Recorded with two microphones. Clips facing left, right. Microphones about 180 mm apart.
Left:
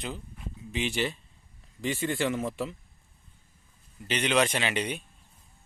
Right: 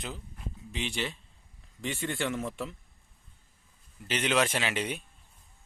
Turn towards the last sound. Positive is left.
turn(degrees=0)  # may be behind; listen again after turning